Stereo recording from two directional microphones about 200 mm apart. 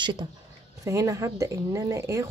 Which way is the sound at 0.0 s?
25° right (ahead or behind).